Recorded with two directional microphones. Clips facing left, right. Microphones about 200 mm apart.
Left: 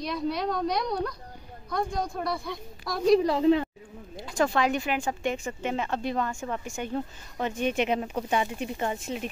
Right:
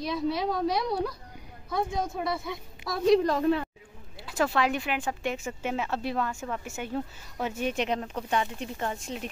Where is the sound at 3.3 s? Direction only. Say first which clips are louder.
Left 3 dB; 20° left (ahead or behind).